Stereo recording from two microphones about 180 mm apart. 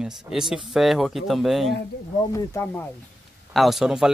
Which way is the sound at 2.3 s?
15° left (ahead or behind).